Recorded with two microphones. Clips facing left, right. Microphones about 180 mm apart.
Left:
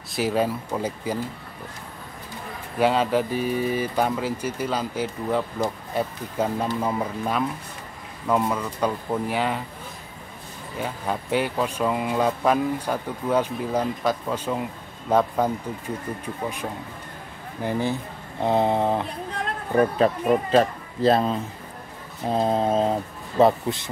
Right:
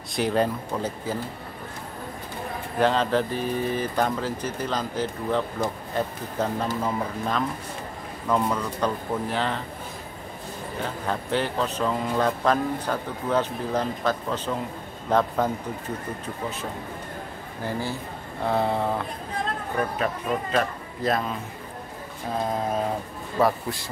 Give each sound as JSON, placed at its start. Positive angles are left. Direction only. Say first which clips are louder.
{"t": 0.1, "sound": "speech", "louder": "even", "side_deg": 5}
{"t": 2.8, "sound": "speech", "louder": "left 1 dB", "side_deg": 10}
{"t": 10.8, "sound": "speech", "louder": "left 2 dB", "side_deg": 10}
{"t": 17.6, "sound": "a sound", "louder": "left 5 dB", "side_deg": 20}
{"t": 20.5, "sound": "speech", "louder": "left 6 dB", "side_deg": 30}
{"t": 22.3, "sound": "a sound", "louder": "left 5 dB", "side_deg": 25}